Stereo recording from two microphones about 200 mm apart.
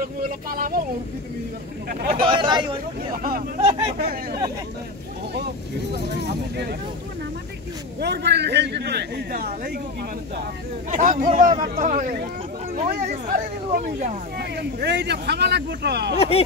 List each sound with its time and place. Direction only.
0.5 s speech: 45° right (ahead or behind)
1.9 s speech: 45° right (ahead or behind)
2.2 s speech: 25° right (ahead or behind)
3.2 s speech: 45° right (ahead or behind)
3.6 s speech: 25° right (ahead or behind)
6.2 s a man's voice: 55° right (ahead or behind)
8.0 s a man's voice: 55° right (ahead or behind)
10.9 s speech: 35° right (ahead or behind)
14.4 s a man's voice: 55° right (ahead or behind)
16.2 s speech: 30° left (ahead or behind)